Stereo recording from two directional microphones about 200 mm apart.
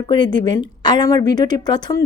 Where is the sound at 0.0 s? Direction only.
20° left (ahead or behind).